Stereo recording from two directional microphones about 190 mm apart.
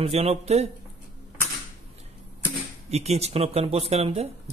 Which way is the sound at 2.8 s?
35° right (ahead or behind).